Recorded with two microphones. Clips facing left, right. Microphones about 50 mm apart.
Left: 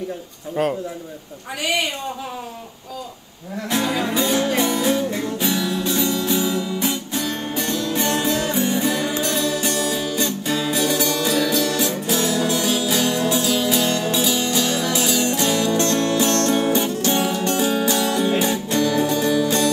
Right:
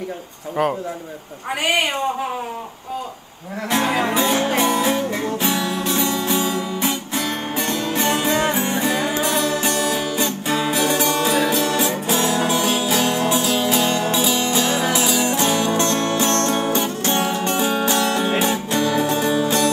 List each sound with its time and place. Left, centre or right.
1.6 s a woman's voice: right
3.7 s music: right